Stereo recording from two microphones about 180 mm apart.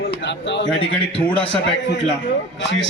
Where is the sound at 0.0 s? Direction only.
70° left (ahead or behind).